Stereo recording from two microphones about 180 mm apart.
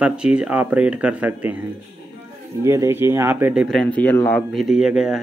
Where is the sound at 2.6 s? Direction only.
15° right (ahead or behind); by 4.5 s 10° left (ahead or behind).